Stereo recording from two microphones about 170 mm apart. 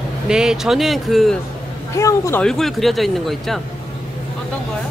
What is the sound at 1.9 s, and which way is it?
Speech, 15° left (ahead or behind).